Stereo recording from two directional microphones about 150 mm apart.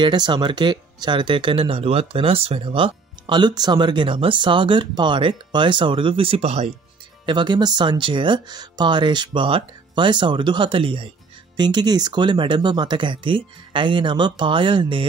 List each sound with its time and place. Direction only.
0.0 s speech: 30° right (ahead or behind); by 6.7 s 45° right (ahead or behind)
7.2 s speech: 30° right (ahead or behind)